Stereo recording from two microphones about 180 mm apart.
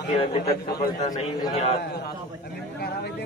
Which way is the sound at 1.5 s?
35° left (ahead or behind).